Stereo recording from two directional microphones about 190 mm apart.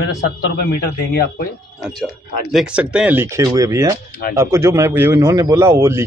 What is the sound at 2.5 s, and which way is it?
A man's voice, 5° right (ahead or behind).